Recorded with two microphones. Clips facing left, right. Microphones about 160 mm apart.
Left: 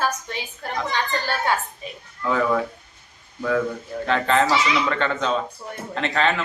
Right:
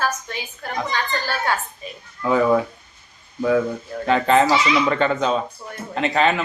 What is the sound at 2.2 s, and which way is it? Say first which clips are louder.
A man's voice: right 4 dB; 20° right (ahead or behind).